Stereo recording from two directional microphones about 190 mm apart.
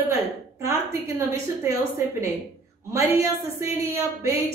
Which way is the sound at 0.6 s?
15° right (ahead or behind).